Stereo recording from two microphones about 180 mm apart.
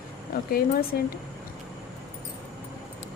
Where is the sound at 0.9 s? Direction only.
60° left (ahead or behind).